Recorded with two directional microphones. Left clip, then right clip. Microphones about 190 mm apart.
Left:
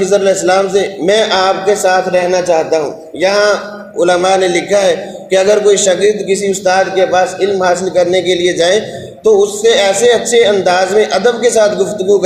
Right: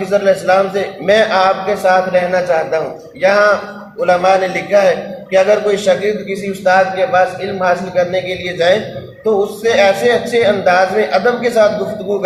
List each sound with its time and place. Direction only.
0.1 s a man's voice: 45° left (ahead or behind)